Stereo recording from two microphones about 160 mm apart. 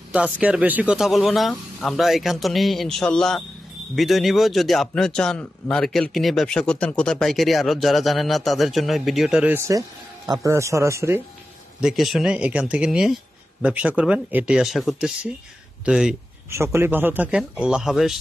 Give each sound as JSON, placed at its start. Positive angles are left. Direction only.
{"t": 0.1, "sound": "a man's voice", "side_deg": -5}
{"t": 9.6, "sound": "speech", "side_deg": -20}
{"t": 11.8, "sound": "a man's voice", "side_deg": 0}
{"t": 16.4, "sound": "speech", "side_deg": -15}